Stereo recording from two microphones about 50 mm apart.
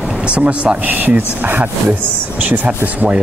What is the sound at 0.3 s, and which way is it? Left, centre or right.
Speech, right.